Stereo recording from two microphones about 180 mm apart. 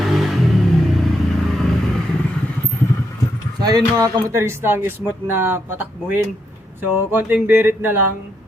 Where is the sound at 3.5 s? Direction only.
25° right (ahead or behind).